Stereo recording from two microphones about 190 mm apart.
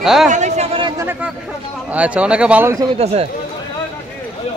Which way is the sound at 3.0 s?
35° right (ahead or behind).